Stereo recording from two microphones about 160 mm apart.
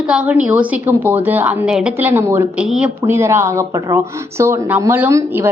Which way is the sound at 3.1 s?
15° right (ahead or behind).